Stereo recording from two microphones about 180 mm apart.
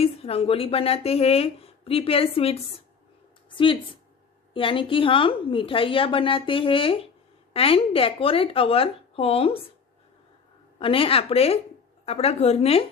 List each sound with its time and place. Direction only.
0.0 s a woman's voice: 35° left (ahead or behind)
10.8 s speech: 30° left (ahead or behind)